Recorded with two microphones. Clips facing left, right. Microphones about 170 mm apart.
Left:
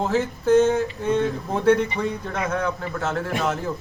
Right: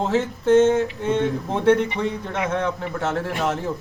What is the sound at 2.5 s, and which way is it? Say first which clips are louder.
A man's voice: right 1 dB; 25° right (ahead or behind).